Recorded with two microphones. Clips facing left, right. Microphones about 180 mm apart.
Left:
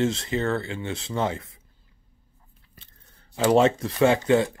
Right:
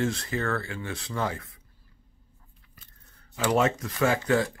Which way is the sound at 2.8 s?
30° left (ahead or behind).